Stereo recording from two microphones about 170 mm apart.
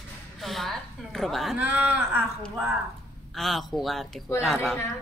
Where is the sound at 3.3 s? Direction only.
Centre (ahead or behind).